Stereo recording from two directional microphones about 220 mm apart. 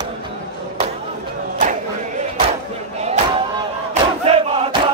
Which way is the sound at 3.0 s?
25° right (ahead or behind).